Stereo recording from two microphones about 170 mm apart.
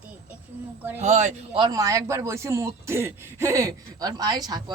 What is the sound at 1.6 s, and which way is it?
Speech, 20° right (ahead or behind).